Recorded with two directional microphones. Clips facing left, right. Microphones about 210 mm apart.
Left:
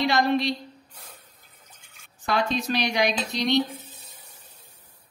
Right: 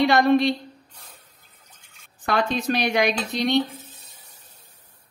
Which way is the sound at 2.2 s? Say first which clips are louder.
Right 2 dB; 55° right (ahead or behind).